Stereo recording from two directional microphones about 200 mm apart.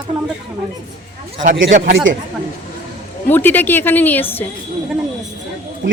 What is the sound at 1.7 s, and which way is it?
Speech, 45° right (ahead or behind).